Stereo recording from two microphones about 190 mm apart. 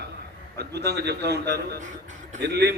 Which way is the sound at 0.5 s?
60° right (ahead or behind).